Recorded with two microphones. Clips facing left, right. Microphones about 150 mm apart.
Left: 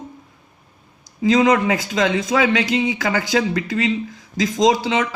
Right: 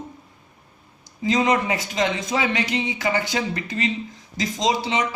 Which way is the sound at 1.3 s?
90° left.